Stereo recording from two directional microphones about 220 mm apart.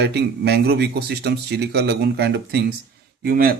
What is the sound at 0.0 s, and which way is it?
Speech, 50° right (ahead or behind).